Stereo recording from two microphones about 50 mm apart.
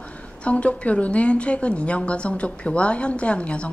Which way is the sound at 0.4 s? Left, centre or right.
Left.